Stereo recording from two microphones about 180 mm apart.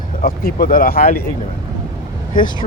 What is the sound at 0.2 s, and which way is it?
Speech, 55° left (ahead or behind).